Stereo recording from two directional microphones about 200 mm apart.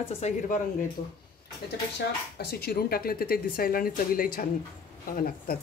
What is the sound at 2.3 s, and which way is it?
Speech, 50° left (ahead or behind).